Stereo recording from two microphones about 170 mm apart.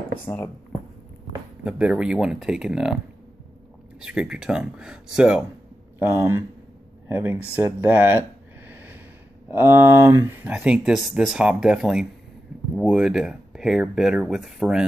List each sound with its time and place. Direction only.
0.3 s speech: 20° left (ahead or behind)
1.6 s speech: 5° right (ahead or behind)
4.0 s speech: 5° right (ahead or behind)
8.2 s a sound: 10° right (ahead or behind)
9.5 s speech: 15° right (ahead or behind)